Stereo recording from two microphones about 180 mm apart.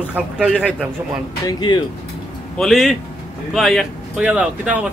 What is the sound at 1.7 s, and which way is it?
Speech, 25° left (ahead or behind).